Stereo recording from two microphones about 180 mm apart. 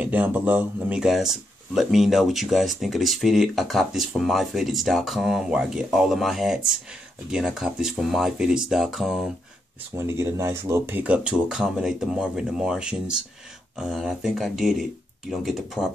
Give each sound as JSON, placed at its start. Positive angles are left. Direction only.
{"t": 0.0, "sound": "speech", "side_deg": -10}
{"t": 9.9, "sound": "speech", "side_deg": -15}